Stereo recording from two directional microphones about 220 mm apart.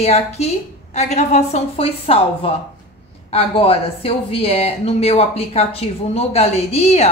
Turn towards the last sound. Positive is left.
turn(degrees=30)  # may be behind; listen again after turning